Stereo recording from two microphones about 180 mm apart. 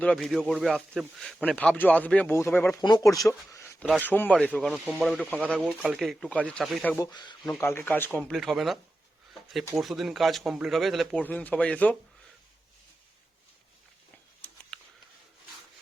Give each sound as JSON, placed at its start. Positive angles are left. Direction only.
{"t": 0.0, "sound": "a man's voice", "side_deg": 5}
{"t": 3.5, "sound": "a sound", "side_deg": 15}
{"t": 4.0, "sound": "speech", "side_deg": 10}
{"t": 6.9, "sound": "speech", "side_deg": 20}
{"t": 7.6, "sound": "a man's voice", "side_deg": 15}
{"t": 14.7, "sound": "a sound", "side_deg": 5}